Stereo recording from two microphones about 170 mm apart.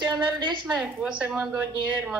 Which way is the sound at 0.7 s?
5° right (ahead or behind).